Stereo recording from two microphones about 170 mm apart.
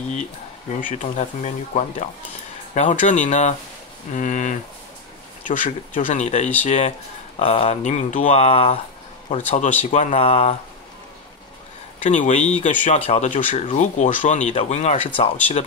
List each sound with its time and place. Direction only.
0.7 s speech: 45° left (ahead or behind)
12.0 s speech: 45° left (ahead or behind)